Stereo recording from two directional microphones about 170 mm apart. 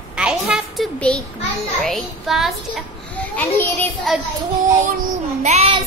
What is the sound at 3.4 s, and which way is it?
Speech, 10° left (ahead or behind).